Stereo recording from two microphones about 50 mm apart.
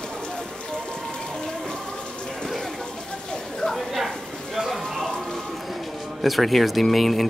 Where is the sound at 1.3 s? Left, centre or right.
Centre.